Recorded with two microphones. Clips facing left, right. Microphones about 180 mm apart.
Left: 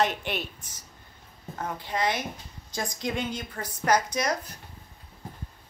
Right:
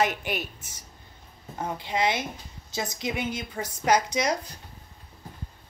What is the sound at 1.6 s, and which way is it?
Speech, 20° right (ahead or behind).